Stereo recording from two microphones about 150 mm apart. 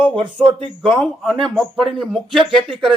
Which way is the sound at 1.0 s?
Centre (ahead or behind).